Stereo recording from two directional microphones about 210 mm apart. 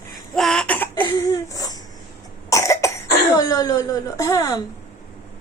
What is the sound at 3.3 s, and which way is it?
A woman's voice, 15° left (ahead or behind).